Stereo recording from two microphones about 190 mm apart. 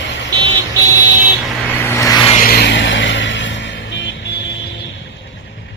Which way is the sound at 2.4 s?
60° left (ahead or behind).